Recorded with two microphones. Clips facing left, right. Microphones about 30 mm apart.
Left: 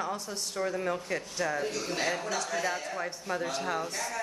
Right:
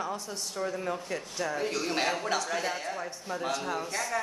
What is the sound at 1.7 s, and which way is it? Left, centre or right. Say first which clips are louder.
A man's voice: right 2 dB; right.